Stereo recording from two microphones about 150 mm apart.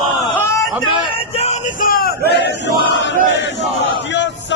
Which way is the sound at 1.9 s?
80° left.